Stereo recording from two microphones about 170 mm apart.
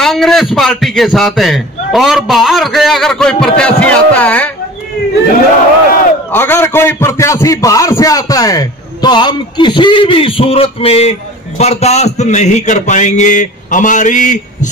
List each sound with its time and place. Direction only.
0.0 s a man's voice: centre (ahead or behind)
6.3 s a man's voice: 15° left (ahead or behind); by 14.7 s 45° left (ahead or behind)